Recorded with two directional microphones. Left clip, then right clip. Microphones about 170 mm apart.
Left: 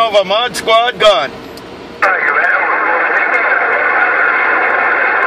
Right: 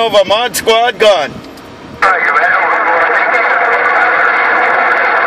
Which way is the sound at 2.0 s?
40° right (ahead or behind).